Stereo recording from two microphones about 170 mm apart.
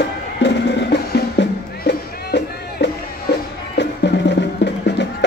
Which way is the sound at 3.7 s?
90° left.